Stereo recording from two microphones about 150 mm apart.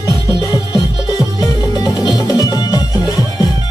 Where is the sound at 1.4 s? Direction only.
25° left (ahead or behind).